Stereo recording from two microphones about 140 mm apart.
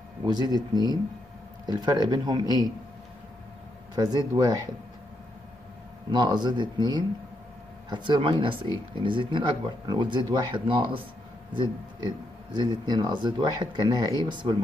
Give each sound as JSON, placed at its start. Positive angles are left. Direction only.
{"t": 0.2, "sound": "speech", "side_deg": -30}
{"t": 3.9, "sound": "speech", "side_deg": -30}
{"t": 6.1, "sound": "speech", "side_deg": -30}